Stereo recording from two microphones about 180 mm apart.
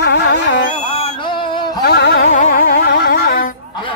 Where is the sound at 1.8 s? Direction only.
65° left (ahead or behind).